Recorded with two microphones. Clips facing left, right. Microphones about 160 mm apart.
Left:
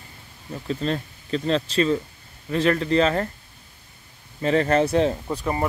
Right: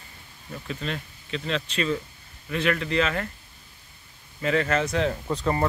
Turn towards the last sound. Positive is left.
turn(degrees=15)  # may be behind; listen again after turning